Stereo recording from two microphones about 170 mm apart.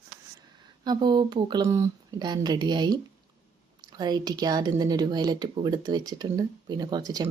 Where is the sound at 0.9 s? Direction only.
25° right (ahead or behind).